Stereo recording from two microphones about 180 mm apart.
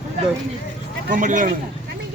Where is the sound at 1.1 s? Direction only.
45° right (ahead or behind).